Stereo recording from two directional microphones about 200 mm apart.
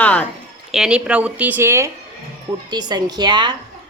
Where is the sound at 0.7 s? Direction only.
5° right (ahead or behind); by 3.5 s 20° right (ahead or behind).